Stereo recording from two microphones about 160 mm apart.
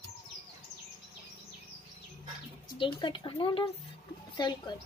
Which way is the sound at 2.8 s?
30° left (ahead or behind).